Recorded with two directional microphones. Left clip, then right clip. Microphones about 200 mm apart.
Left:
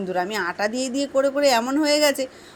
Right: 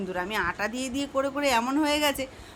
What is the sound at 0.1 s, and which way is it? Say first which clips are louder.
A woman's voice: left 4 dB; 15° left (ahead or behind).